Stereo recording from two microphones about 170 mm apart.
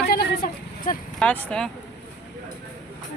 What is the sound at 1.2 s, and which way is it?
Speech, 5° left (ahead or behind).